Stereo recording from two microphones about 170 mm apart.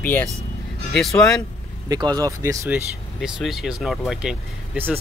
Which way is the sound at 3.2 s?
5° right (ahead or behind).